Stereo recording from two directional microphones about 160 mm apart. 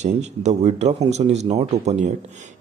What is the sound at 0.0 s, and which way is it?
Speech, 45° right (ahead or behind).